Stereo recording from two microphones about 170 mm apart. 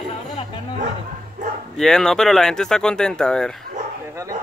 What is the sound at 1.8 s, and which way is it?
Speech, 5° left (ahead or behind).